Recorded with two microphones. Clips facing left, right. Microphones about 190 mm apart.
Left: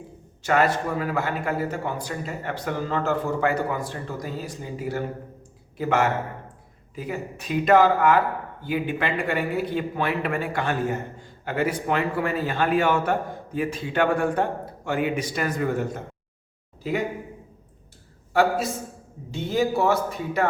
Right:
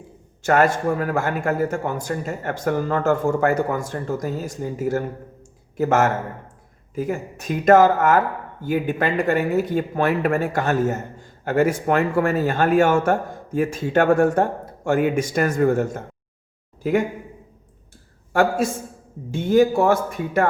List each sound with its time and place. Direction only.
0.4 s speech: 50° right (ahead or behind)
18.3 s speech: 50° right (ahead or behind)